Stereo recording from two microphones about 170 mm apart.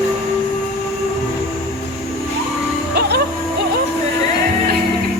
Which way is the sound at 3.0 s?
70° right (ahead or behind).